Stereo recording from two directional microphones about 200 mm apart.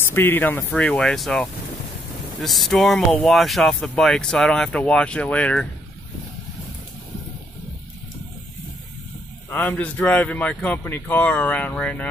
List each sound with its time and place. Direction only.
0.0 s speech: 10° left (ahead or behind)
9.5 s speech: 10° left (ahead or behind)